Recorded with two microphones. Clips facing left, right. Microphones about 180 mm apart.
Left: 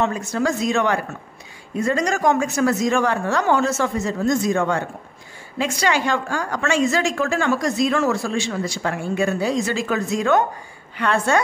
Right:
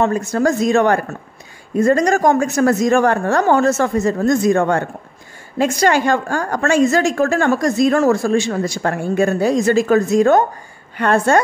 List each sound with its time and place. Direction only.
0.0 s a woman's voice: 45° right (ahead or behind)